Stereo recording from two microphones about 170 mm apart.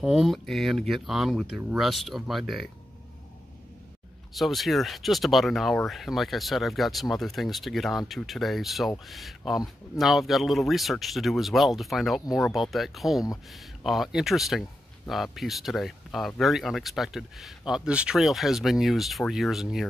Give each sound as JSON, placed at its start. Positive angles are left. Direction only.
{"t": 0.0, "sound": "speech", "side_deg": 0}
{"t": 4.3, "sound": "speech", "side_deg": 0}